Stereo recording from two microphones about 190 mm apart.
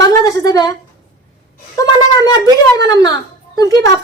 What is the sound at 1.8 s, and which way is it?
A woman's voice, 20° left (ahead or behind).